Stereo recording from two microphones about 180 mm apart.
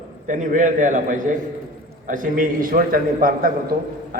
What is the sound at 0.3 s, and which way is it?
A man's voice, 45° right (ahead or behind).